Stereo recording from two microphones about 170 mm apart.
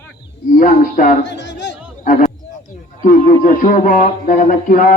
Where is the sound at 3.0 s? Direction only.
50° left (ahead or behind).